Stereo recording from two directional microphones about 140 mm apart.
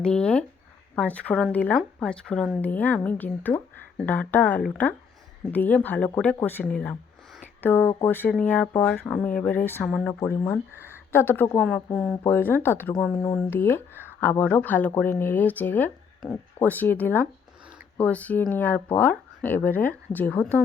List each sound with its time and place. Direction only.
0.0 s speech: 5° left (ahead or behind)
10.2 s speech: 20° left (ahead or behind)
10.8 s a sound: 15° right (ahead or behind)
11.1 s speech: 15° left (ahead or behind)
11.9 s speech: centre (ahead or behind)
12.2 s speech: 15° left (ahead or behind)